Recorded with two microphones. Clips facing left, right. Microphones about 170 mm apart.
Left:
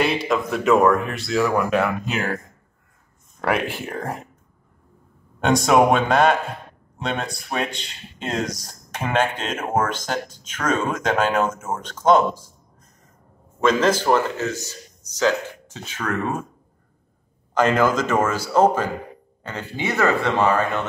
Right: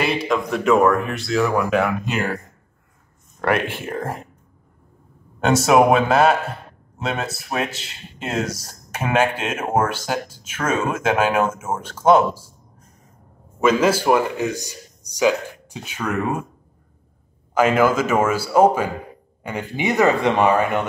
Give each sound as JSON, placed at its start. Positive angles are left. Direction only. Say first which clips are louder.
{"t": 0.0, "sound": "speech", "louder": "even", "side_deg": 0}
{"t": 5.4, "sound": "speech", "louder": "right 1 dB", "side_deg": -5}
{"t": 13.6, "sound": "speech", "louder": "right 1 dB", "side_deg": -10}
{"t": 17.6, "sound": "speech", "louder": "right 2 dB", "side_deg": -10}